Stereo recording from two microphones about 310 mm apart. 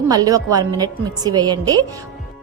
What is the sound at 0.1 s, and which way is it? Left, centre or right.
Speech, centre.